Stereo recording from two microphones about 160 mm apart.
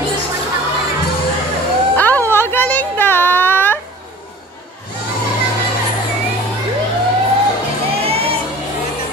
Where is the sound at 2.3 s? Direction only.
15° left (ahead or behind).